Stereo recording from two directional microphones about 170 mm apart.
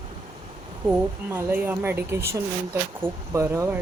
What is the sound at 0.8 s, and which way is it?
Speech, 10° right (ahead or behind).